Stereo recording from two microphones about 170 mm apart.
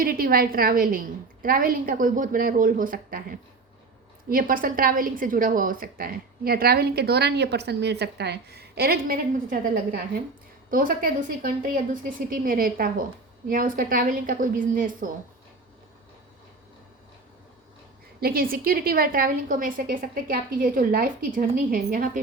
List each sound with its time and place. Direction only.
0.0 s a woman's voice: 60° right (ahead or behind)
18.2 s a woman's voice: 60° right (ahead or behind)